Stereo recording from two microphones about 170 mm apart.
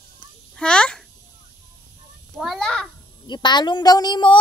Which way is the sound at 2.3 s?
Centre (ahead or behind).